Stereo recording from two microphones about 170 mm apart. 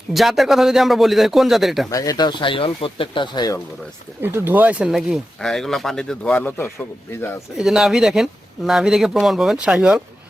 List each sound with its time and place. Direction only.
0.1 s speech: centre (ahead or behind)
1.9 s speech: 20° left (ahead or behind)
4.2 s speech: 15° right (ahead or behind); by 6.7 s 10° left (ahead or behind)
7.5 s speech: centre (ahead or behind)